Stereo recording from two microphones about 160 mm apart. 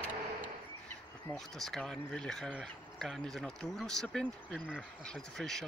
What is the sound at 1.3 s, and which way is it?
Speech, 5° left (ahead or behind).